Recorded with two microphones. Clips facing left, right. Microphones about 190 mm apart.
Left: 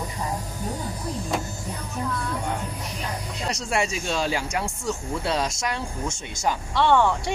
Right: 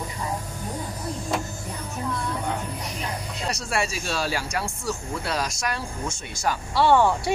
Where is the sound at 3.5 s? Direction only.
20° left (ahead or behind).